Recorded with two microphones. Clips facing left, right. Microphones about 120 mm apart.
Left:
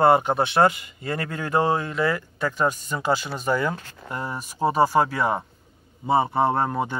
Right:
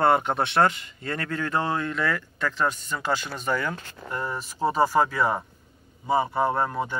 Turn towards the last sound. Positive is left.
turn(degrees=25)  # may be behind; listen again after turning